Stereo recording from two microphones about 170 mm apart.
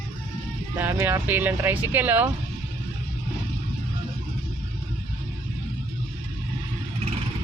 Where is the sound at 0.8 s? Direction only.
15° right (ahead or behind).